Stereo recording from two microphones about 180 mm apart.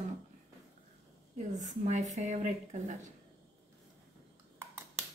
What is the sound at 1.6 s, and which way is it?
A woman's voice, 40° right (ahead or behind).